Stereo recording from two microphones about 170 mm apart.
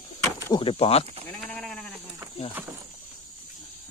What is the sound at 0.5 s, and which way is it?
Speech, 35° left (ahead or behind).